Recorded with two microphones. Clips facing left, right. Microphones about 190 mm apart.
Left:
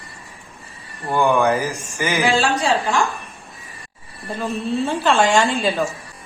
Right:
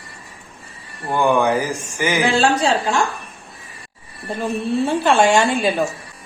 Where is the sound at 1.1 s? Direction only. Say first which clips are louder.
Even; 15° right (ahead or behind).